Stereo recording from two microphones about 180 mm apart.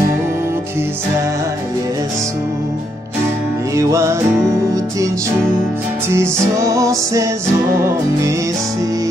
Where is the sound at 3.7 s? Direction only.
15° right (ahead or behind).